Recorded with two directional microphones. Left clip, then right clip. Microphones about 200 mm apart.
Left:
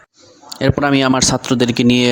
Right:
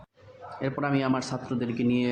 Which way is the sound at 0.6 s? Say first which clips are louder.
Left 14 dB; 50° left (ahead or behind).